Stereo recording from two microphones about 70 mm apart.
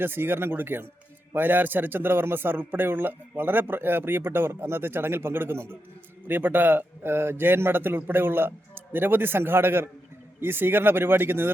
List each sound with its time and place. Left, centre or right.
0.0 s a man's voice: right